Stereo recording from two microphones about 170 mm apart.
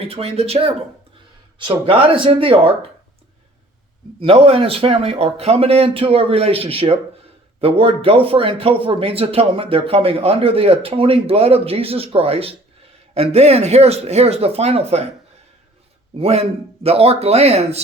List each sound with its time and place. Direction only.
0.0 s speech: 35° right (ahead or behind)
4.2 s speech: 35° right (ahead or behind)
16.1 s speech: 35° right (ahead or behind)